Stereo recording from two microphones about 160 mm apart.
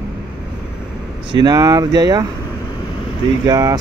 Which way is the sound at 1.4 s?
25° right (ahead or behind).